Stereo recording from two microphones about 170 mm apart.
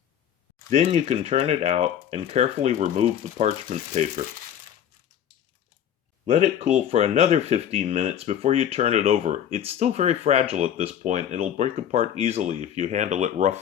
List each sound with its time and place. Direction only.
0.7 s speech: 40° right (ahead or behind)
6.2 s speech: 40° right (ahead or behind)